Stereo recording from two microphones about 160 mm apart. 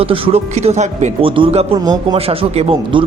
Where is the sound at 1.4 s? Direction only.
35° right (ahead or behind).